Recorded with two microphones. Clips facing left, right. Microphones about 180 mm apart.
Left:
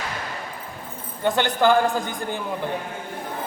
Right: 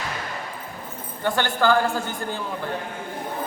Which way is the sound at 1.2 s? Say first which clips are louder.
Left 2 dB; 20° left (ahead or behind).